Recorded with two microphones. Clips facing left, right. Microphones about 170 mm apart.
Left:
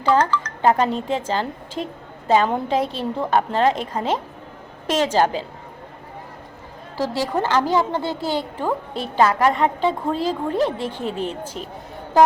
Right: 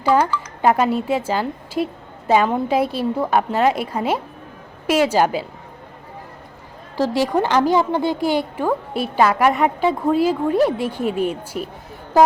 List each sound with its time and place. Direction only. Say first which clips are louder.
0.0 s a woman's voice: right 1 dB; 10° right (ahead or behind)
7.1 s a woman's voice: right 3 dB; 15° right (ahead or behind)